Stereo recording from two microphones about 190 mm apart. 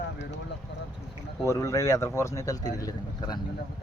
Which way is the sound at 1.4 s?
15° left (ahead or behind).